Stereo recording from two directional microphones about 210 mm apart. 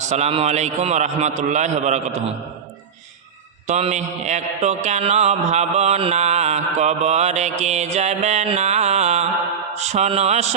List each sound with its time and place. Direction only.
0.1 s mantra: 30° right (ahead or behind)
3.7 s mantra: 30° right (ahead or behind)